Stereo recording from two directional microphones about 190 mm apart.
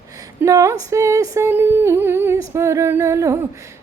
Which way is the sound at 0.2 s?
15° right (ahead or behind).